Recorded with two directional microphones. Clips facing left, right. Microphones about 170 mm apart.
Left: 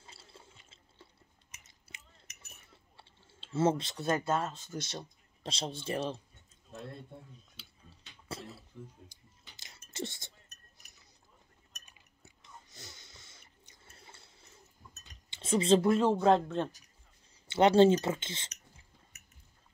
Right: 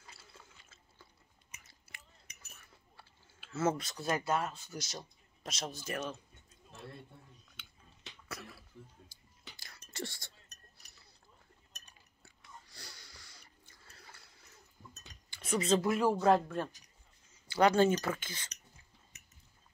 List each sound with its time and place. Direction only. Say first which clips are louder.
0.0 s water: left 2 dB; 30° left (ahead or behind)
1.6 s biting: left 1 dB; 20° left (ahead or behind)
2.5 s clicking: left 1 dB; 25° left (ahead or behind)
4.3 s speech: left 2 dB; 10° right (ahead or behind)
4.7 s speech: left 4 dB; 25° left (ahead or behind)
7.6 s tick-tock: left 2 dB; 30° left (ahead or behind)
8.3 s cough: left 4 dB; 25° left (ahead or behind)
9.1 s a sound: right 3 dB; 20° left (ahead or behind)
12.2 s chewing: left 1 dB; 20° left (ahead or behind)
15.2 s speech: left 4 dB; 25° left (ahead or behind)